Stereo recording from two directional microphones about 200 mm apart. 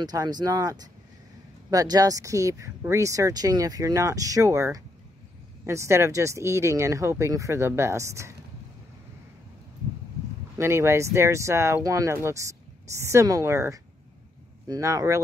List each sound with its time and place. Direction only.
0.0 s speech: 20° right (ahead or behind)
10.6 s speech: 15° right (ahead or behind)